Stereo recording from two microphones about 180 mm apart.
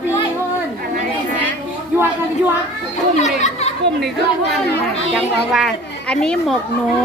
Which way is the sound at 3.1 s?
40° left (ahead or behind).